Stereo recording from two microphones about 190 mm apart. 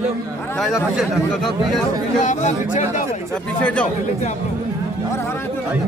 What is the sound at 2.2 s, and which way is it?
Speech, 40° left (ahead or behind).